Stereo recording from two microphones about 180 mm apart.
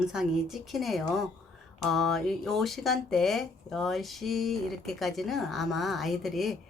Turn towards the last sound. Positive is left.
turn(degrees=0)  # may be behind; listen again after turning